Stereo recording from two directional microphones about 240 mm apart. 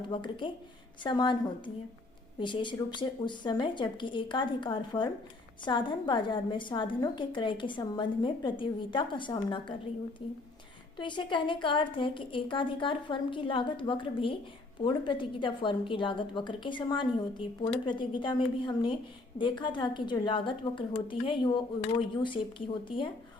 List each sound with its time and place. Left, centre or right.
0.1 s a woman's voice: left
10.9 s a woman's voice: centre